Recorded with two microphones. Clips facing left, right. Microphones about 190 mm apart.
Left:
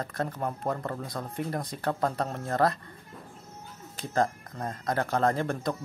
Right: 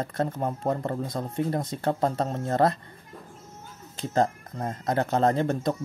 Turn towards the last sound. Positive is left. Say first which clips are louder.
# right 4 dB
turn(degrees=-25)  # may be behind; listen again after turning